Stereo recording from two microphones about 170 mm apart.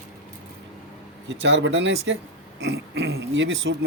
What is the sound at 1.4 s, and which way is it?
Speech, 90° right.